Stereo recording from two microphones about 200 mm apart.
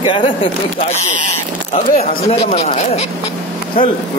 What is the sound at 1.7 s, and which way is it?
Speech, 30° left (ahead or behind).